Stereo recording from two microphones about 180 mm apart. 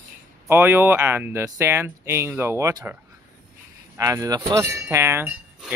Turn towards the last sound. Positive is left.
turn(degrees=-15)  # may be behind; listen again after turning